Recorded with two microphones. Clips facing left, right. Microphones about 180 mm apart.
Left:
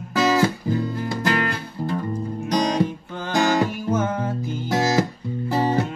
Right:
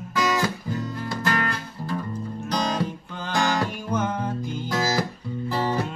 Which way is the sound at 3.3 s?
20° left (ahead or behind).